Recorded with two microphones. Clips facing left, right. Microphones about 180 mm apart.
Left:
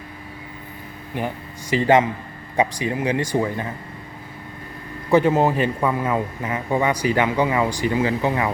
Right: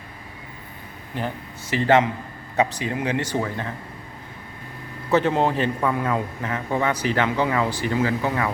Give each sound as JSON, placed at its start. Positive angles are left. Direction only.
{"t": 1.7, "sound": "a man's voice", "side_deg": 10}
{"t": 5.1, "sound": "a man's voice", "side_deg": 10}